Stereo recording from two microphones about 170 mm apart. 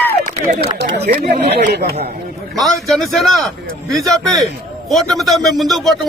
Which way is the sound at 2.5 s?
Centre (ahead or behind).